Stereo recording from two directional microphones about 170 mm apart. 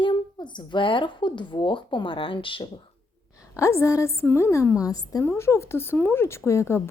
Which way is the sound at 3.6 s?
15° left (ahead or behind).